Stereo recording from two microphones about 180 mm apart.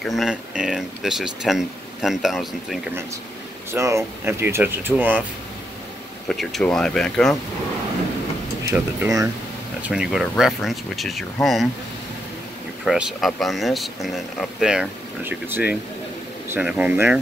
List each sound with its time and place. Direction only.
0.0 s speech: centre (ahead or behind)
3.7 s speech: 15° right (ahead or behind)
6.2 s speech: centre (ahead or behind)
8.6 s speech: 15° right (ahead or behind)
9.8 s speech: 5° right (ahead or behind)
12.8 s speech: 5° right (ahead or behind)